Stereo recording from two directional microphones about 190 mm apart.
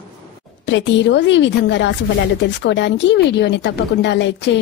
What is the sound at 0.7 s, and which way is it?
A woman's voice, 70° left (ahead or behind).